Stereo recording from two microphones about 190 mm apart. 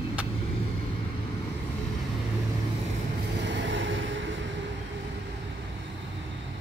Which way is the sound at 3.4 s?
75° right (ahead or behind).